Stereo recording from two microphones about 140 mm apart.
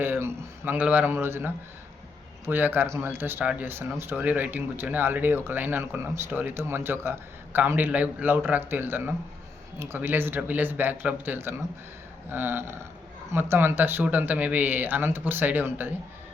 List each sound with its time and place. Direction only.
0.0 s speech: 15° right (ahead or behind)